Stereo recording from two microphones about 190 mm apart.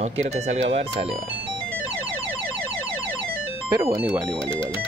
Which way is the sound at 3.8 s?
15° right (ahead or behind).